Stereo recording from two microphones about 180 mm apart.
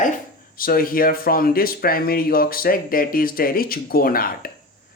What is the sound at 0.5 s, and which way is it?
Speech, 55° left (ahead or behind).